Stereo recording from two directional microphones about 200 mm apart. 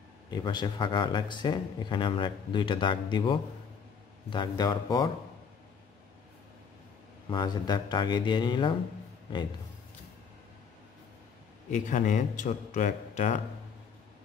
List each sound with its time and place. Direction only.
0.3 s speech: 20° left (ahead or behind)
7.2 s speech: 20° left (ahead or behind)
11.7 s a man's voice: 40° left (ahead or behind)